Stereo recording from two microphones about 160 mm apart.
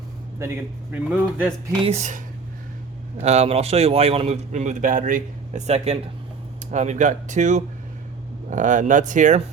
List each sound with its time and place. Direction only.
0.9 s a man's voice: 10° right (ahead or behind)
1.8 s a man's voice: 45° right (ahead or behind)